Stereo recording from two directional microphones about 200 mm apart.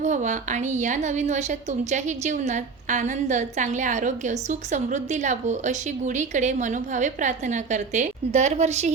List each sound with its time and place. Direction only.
0.0 s a woman's voice: 35° right (ahead or behind)